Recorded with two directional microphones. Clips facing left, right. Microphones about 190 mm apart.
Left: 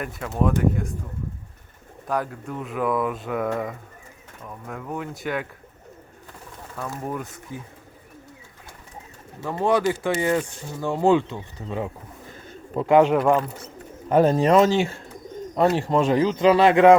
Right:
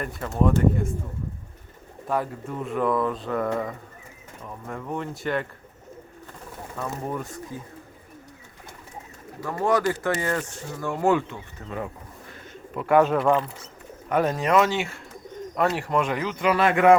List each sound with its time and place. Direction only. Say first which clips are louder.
0.0 s speech: even; 5° left (ahead or behind)
2.0 s speech: even; centre (ahead or behind)
6.8 s speech: even; centre (ahead or behind)
9.4 s speech: left 2 dB; 20° left (ahead or behind)
14.1 s speech: left 5 dB; 30° left (ahead or behind)